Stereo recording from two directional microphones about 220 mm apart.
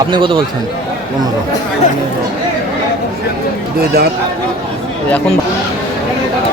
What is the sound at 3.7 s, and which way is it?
Speech, 45° right (ahead or behind).